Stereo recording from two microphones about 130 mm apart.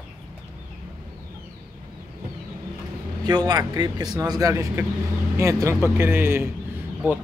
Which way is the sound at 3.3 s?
30° right (ahead or behind).